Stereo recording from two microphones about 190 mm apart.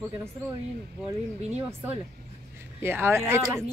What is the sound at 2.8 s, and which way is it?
Speech, 15° right (ahead or behind).